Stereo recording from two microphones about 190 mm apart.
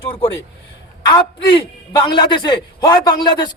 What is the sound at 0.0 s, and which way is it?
Speech, 30° left (ahead or behind).